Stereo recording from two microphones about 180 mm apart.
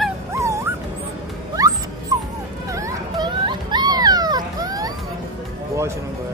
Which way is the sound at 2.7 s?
15° right (ahead or behind).